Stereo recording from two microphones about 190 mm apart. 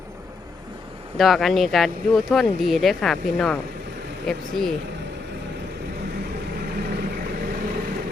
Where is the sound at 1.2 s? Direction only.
Centre (ahead or behind).